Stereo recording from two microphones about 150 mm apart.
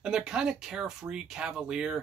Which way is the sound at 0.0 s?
5° right (ahead or behind).